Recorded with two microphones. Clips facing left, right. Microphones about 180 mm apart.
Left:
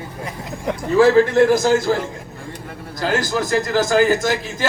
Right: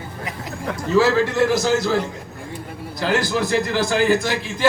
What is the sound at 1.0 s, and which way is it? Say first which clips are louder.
Speech: left 4 dB; 50° left (ahead or behind).